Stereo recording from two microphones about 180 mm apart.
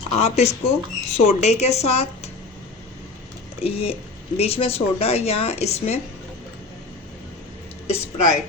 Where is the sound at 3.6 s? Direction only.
35° left (ahead or behind).